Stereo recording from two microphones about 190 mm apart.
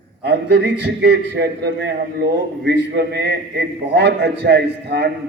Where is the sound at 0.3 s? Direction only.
60° right (ahead or behind).